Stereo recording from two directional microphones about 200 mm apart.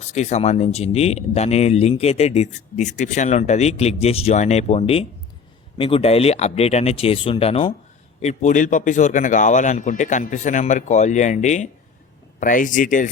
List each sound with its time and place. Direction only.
0.1 s speech: 35° left (ahead or behind)